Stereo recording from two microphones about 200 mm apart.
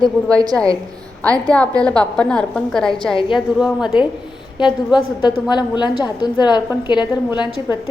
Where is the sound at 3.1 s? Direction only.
25° left (ahead or behind).